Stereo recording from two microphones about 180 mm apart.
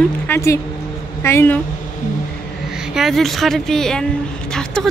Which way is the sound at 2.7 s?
5° right (ahead or behind).